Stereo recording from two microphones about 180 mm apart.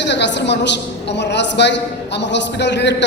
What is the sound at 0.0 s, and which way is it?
A woman's voice, 75° left (ahead or behind).